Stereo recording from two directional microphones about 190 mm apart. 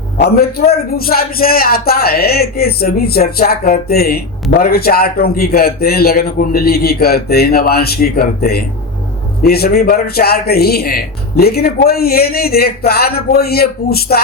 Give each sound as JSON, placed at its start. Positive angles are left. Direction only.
{"t": 0.2, "sound": "a man's voice", "side_deg": 55}